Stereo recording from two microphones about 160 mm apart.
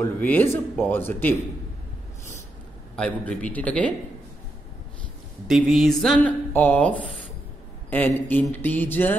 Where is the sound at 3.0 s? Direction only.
10° left (ahead or behind).